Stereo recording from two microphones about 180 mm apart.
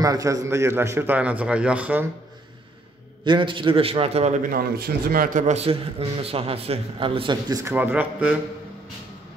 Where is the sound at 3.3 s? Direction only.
25° right (ahead or behind).